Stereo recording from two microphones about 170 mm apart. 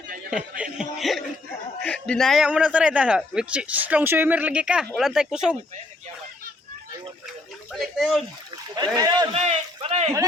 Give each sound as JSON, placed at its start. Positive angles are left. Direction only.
{"t": 0.3, "sound": "speech", "side_deg": -5}
{"t": 7.7, "sound": "speech", "side_deg": 0}
{"t": 8.7, "sound": "speech", "side_deg": -25}
{"t": 9.3, "sound": "speech", "side_deg": -35}